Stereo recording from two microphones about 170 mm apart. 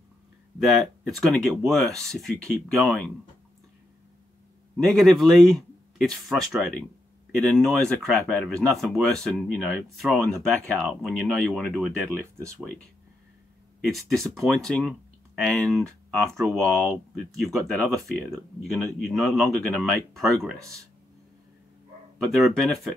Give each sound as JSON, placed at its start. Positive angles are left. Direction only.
{"t": 0.6, "sound": "speech", "side_deg": 0}
{"t": 4.8, "sound": "speech", "side_deg": 0}
{"t": 12.4, "sound": "speech", "side_deg": -15}
{"t": 13.7, "sound": "speech", "side_deg": 0}
{"t": 22.2, "sound": "speech", "side_deg": 0}